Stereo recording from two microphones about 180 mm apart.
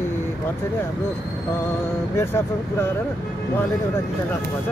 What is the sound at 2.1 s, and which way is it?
Speech, 15° left (ahead or behind).